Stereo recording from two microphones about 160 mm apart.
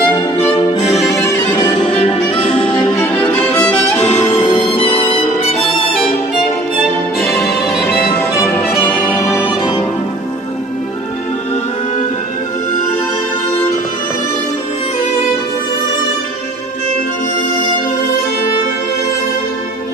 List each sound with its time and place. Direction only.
0.0 s violin: 30° left (ahead or behind)
0.9 s music: centre (ahead or behind)
2.0 s music: 35° left (ahead or behind)
4.0 s music: 50° left (ahead or behind)
4.7 s music: 35° left (ahead or behind)
7.2 s music: centre (ahead or behind)
9.3 s music: 5° right (ahead or behind)
9.6 s music: 30° left (ahead or behind)